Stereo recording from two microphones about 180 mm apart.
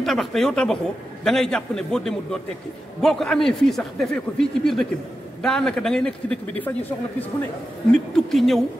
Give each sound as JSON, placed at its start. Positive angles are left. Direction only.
{"t": 0.0, "sound": "a man's voice", "side_deg": 0}